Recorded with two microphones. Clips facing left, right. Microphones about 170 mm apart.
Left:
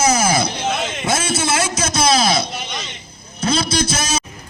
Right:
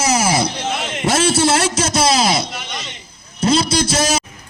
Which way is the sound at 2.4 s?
85° right.